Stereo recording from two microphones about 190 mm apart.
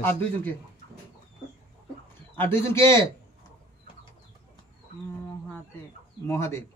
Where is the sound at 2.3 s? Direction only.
10° left (ahead or behind).